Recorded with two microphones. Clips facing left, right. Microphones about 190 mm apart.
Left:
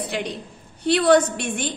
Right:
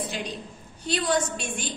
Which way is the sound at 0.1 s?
65° left (ahead or behind).